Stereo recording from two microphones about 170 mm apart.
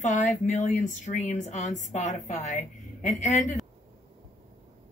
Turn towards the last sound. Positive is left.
turn(degrees=45)  # may be behind; listen again after turning